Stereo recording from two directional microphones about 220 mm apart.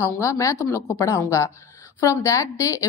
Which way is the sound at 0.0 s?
15° left (ahead or behind).